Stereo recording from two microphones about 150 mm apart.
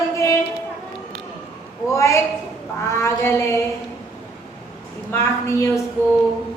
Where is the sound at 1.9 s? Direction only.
20° left (ahead or behind).